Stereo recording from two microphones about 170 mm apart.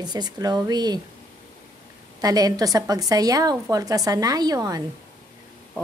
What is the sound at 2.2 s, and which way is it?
A woman's voice, 20° right (ahead or behind).